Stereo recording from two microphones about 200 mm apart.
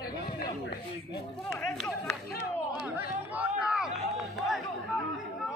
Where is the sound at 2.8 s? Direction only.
10° right (ahead or behind).